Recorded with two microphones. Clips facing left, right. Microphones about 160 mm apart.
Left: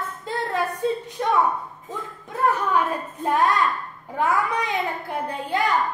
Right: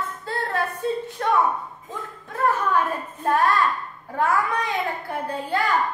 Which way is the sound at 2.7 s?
15° left (ahead or behind).